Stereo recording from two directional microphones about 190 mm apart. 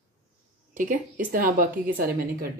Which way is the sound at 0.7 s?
45° right (ahead or behind).